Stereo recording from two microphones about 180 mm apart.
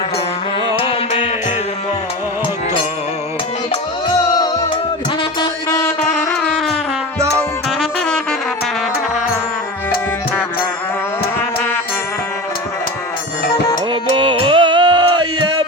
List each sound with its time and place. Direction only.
0.8 s music: 30° left (ahead or behind)
5.4 s music: 20° left (ahead or behind)
7.3 s saxophone: 5° left (ahead or behind)
13.9 s music: 30° right (ahead or behind)